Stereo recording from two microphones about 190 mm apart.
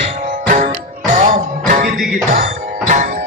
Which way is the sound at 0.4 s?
40° right (ahead or behind).